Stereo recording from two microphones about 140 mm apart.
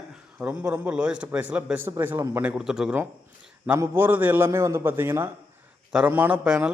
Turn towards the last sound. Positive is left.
turn(degrees=-10)  # may be behind; listen again after turning